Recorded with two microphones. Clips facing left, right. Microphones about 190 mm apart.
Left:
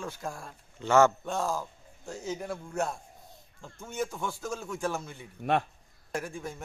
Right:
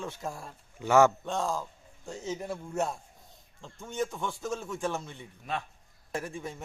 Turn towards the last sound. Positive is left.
turn(degrees=0)  # may be behind; listen again after turning